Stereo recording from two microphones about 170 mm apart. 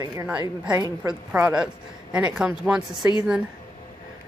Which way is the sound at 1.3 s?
5° right (ahead or behind).